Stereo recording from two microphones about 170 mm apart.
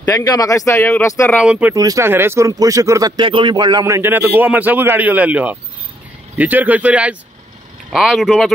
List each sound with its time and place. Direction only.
0.0 s speech: 15° left (ahead or behind)
1.3 s speech: 5° right (ahead or behind)
1.7 s speech: 20° right (ahead or behind); by 8.5 s centre (ahead or behind)